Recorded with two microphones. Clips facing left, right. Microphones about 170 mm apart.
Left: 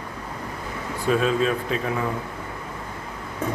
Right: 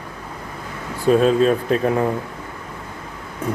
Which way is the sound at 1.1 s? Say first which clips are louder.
Right 7 dB; 40° right (ahead or behind).